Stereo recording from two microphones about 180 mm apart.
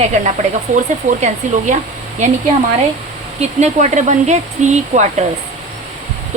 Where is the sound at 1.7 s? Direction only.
40° right (ahead or behind).